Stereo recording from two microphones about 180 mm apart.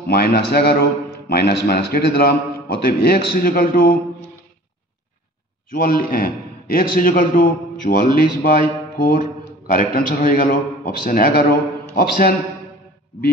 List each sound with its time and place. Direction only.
0.1 s a man's voice: 60° left (ahead or behind)
5.7 s a man's voice: 50° left (ahead or behind)